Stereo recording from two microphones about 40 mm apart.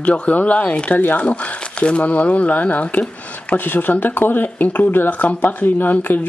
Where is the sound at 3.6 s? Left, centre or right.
Left.